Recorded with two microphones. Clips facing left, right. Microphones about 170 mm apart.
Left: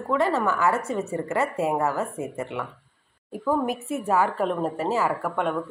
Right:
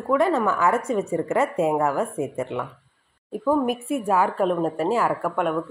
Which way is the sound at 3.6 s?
15° right (ahead or behind).